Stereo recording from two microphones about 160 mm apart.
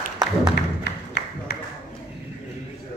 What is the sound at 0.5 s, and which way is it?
Thump, 90° left.